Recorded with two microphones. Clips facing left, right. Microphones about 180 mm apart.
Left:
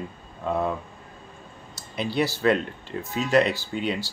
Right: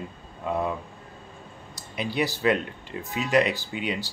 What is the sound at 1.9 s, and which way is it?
Speech, 10° right (ahead or behind).